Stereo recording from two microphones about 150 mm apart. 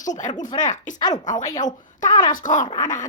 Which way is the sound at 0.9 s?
25° left (ahead or behind).